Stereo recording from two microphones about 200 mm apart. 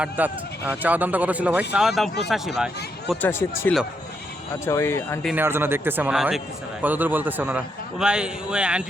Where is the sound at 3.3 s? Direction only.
10° left (ahead or behind).